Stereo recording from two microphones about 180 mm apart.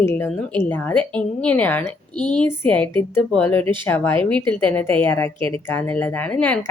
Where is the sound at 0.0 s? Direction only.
10° left (ahead or behind).